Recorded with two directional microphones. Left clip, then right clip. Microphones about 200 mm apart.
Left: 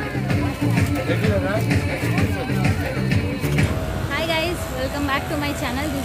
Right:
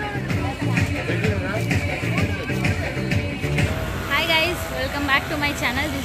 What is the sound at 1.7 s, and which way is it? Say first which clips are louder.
Music: left 1 dB; 25° right (ahead or behind).